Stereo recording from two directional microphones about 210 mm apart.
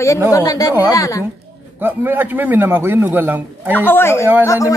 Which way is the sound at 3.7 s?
10° left (ahead or behind).